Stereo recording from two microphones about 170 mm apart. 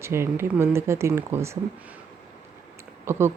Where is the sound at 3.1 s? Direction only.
15° right (ahead or behind).